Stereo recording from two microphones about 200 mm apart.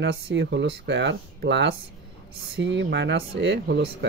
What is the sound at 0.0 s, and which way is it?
Speech, 60° right (ahead or behind).